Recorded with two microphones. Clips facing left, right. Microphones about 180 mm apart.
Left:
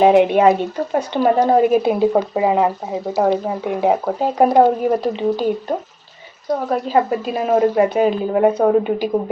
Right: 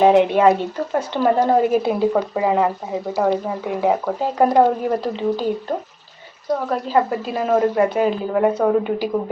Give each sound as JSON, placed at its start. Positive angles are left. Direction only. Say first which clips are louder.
{"t": 0.0, "sound": "speech", "louder": "left 2 dB", "side_deg": 15}
{"t": 3.8, "sound": "speech", "louder": "left 2 dB", "side_deg": 20}